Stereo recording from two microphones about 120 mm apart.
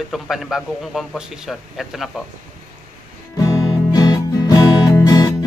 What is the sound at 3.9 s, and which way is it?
Music, 35° left (ahead or behind).